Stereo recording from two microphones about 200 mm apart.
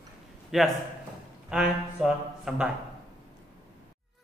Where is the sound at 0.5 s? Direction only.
Centre (ahead or behind).